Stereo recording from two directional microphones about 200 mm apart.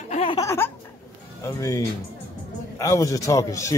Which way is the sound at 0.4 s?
15° left (ahead or behind).